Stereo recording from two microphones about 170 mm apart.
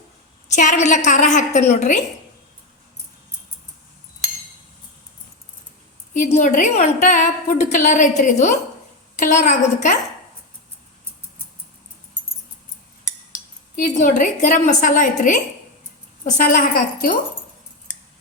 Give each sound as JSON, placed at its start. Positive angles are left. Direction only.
{"t": 0.4, "sound": "a woman's voice", "side_deg": 45}
{"t": 6.1, "sound": "a woman's voice", "side_deg": 45}
{"t": 13.7, "sound": "a woman's voice", "side_deg": 50}